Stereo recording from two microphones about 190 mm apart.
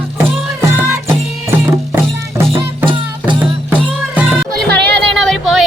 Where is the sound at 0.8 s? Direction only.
15° right (ahead or behind).